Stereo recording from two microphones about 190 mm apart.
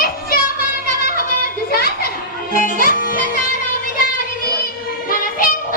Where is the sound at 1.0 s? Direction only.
50° left (ahead or behind).